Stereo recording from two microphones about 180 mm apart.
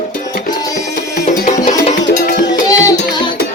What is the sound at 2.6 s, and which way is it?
Music, 20° left (ahead or behind).